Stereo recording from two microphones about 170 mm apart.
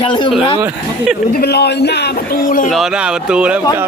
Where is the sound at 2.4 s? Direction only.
50° left (ahead or behind).